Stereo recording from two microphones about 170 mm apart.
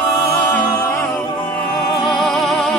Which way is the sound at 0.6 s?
20° left (ahead or behind).